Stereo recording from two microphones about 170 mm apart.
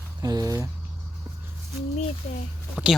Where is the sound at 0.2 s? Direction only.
20° right (ahead or behind).